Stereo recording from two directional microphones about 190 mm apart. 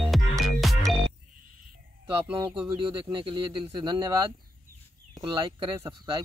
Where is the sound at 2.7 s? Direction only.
25° right (ahead or behind).